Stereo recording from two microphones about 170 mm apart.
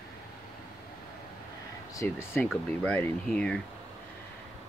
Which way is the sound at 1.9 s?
15° left (ahead or behind).